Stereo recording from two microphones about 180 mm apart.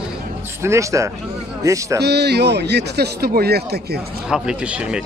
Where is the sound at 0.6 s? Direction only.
15° right (ahead or behind).